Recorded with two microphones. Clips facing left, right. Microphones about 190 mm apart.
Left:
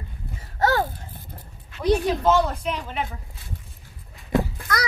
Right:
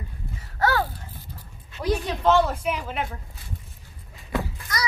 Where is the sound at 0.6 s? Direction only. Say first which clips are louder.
Left 2 dB; 25° left (ahead or behind).